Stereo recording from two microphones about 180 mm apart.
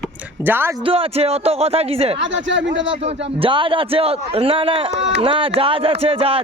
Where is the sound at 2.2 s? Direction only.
90° right.